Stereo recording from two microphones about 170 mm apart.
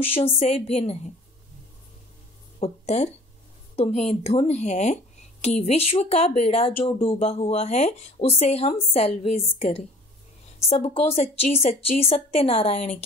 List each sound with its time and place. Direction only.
0.0 s speech: 35° left (ahead or behind)
2.6 s speech: 40° left (ahead or behind)